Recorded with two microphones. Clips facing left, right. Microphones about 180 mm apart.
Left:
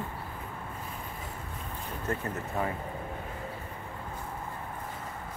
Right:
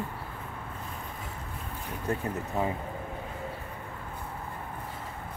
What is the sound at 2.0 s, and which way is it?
Speech, 15° right (ahead or behind).